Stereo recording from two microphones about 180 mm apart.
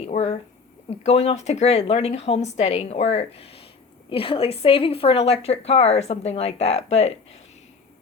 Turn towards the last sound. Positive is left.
turn(degrees=35)  # may be behind; listen again after turning